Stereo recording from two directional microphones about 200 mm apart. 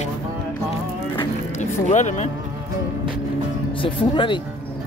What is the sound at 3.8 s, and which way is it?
Speech, 25° left (ahead or behind).